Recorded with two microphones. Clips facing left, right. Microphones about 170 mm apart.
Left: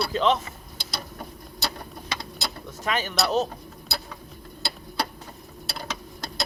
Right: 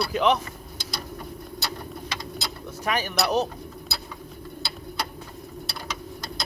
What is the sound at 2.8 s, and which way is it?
Speech, 10° right (ahead or behind).